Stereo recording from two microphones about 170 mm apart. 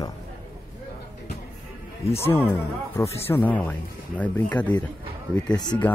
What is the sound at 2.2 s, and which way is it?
Speech, 15° left (ahead or behind).